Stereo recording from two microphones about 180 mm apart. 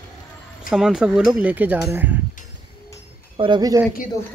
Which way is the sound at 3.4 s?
25° right (ahead or behind).